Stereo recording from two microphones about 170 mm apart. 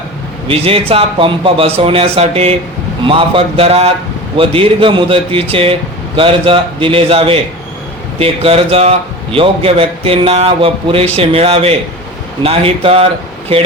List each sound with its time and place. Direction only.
0.4 s a man's voice: 35° right (ahead or behind)